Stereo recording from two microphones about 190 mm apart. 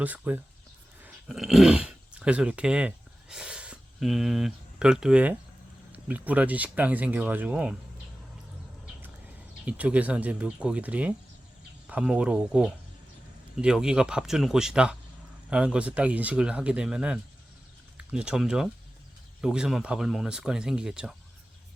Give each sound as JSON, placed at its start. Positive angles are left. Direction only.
{"t": 0.0, "sound": "speech", "side_deg": -10}
{"t": 9.6, "sound": "speech", "side_deg": -5}